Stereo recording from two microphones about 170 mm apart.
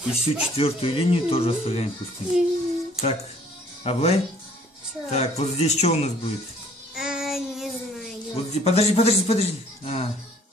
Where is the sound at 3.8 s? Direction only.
35° left (ahead or behind).